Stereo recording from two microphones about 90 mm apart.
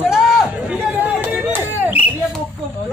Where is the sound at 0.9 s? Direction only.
20° right (ahead or behind).